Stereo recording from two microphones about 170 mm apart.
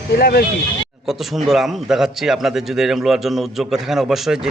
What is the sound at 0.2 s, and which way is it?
Speech, 65° left (ahead or behind).